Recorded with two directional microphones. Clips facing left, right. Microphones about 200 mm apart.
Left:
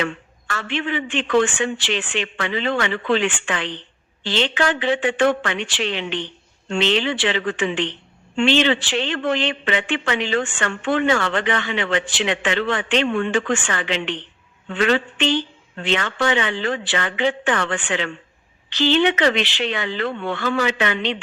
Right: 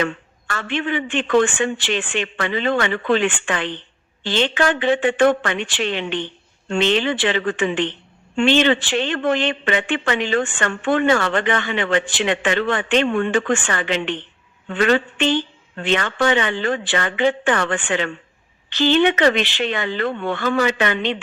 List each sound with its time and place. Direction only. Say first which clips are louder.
0.0 s a man's voice: right 2 dB; 50° right (ahead or behind)